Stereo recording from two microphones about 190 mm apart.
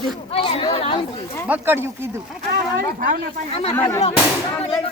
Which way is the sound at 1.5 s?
10° right (ahead or behind).